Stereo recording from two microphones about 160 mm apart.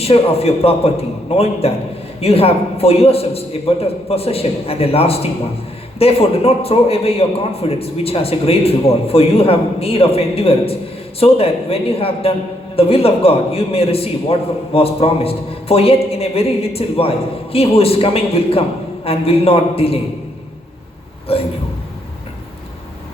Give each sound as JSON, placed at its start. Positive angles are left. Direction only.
{"t": 0.0, "sound": "a man's voice", "side_deg": 40}
{"t": 21.3, "sound": "a man's voice", "side_deg": 35}